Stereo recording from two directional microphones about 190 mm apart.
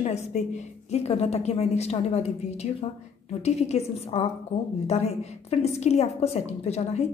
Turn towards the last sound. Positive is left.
turn(degrees=35)  # may be behind; listen again after turning